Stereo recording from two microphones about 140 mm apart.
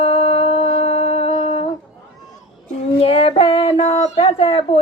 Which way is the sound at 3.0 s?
40° left (ahead or behind).